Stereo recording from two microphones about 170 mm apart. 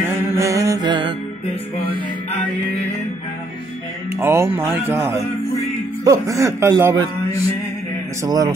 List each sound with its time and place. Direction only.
0.0 s music: 15° right (ahead or behind)
4.2 s speech: 15° right (ahead or behind)
8.2 s speech: 20° right (ahead or behind)